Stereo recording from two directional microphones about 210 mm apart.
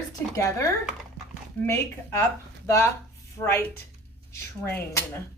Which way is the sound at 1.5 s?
10° left (ahead or behind).